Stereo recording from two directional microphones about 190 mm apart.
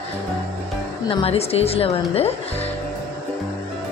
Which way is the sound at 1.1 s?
30° left (ahead or behind).